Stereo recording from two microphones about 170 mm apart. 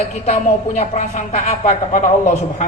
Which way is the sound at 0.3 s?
40° left (ahead or behind).